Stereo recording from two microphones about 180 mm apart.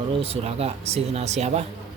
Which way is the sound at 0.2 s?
35° right (ahead or behind).